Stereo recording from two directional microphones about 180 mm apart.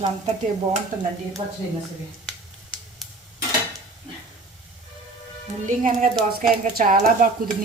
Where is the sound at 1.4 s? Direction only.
35° right (ahead or behind).